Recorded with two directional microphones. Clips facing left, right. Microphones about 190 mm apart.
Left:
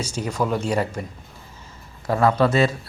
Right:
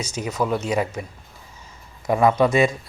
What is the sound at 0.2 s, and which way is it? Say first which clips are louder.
Speech: even; 10° right (ahead or behind).